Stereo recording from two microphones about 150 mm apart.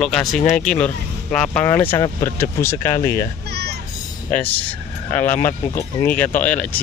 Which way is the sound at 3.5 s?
90° right.